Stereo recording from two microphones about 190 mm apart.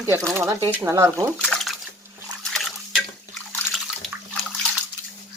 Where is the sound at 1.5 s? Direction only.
Centre (ahead or behind).